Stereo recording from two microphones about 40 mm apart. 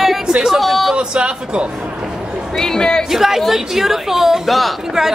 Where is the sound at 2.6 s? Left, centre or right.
Centre.